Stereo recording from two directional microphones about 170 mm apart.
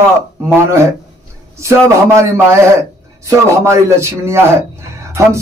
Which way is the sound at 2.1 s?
15° right (ahead or behind).